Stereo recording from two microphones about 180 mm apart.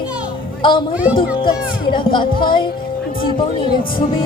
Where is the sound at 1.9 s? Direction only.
25° left (ahead or behind).